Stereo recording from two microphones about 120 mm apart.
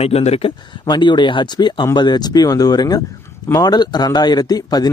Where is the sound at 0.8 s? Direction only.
40° left (ahead or behind).